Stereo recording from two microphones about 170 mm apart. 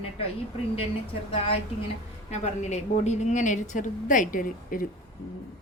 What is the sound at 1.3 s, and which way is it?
A woman's voice, 35° left (ahead or behind).